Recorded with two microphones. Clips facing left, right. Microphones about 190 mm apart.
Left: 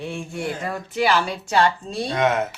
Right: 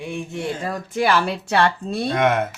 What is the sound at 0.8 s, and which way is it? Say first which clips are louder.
Speech: right 1 dB; 50° right (ahead or behind).